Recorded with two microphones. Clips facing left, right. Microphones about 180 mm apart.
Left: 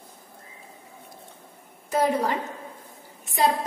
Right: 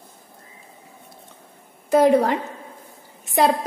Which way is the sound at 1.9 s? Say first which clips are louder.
Right 8 dB; 65° right (ahead or behind).